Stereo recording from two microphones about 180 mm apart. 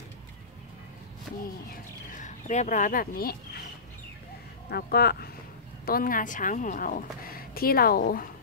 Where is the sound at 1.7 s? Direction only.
45° left (ahead or behind).